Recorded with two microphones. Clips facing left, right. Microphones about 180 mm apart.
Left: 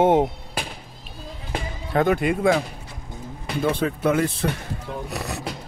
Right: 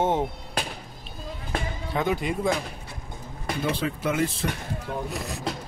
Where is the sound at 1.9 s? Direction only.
55° left (ahead or behind).